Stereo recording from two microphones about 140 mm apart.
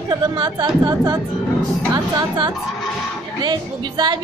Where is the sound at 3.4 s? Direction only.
30° right (ahead or behind).